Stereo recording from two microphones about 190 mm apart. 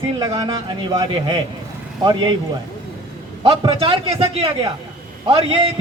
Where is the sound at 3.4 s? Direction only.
30° right (ahead or behind).